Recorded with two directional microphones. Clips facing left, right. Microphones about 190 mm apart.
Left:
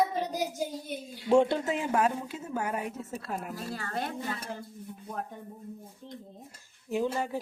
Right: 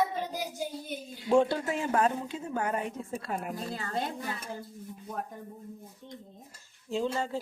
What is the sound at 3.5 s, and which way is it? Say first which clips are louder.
Speech: right 1 dB; 25° right (ahead or behind).